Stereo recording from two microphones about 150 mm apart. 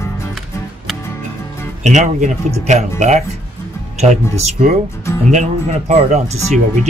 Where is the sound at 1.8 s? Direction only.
50° right (ahead or behind).